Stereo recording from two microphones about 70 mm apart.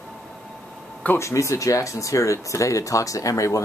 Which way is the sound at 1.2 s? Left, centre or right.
Left.